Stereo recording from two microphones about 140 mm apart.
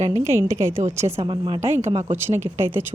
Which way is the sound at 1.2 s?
35° right (ahead or behind).